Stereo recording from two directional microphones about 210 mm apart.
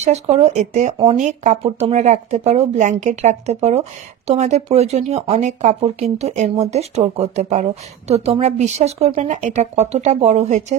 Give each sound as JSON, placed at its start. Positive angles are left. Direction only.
{"t": 0.0, "sound": "speech", "side_deg": -30}